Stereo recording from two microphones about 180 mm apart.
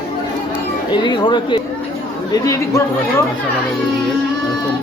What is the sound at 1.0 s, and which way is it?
Speech, 25° left (ahead or behind).